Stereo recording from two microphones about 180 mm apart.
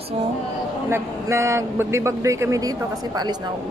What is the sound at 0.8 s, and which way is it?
A man's voice, 15° right (ahead or behind).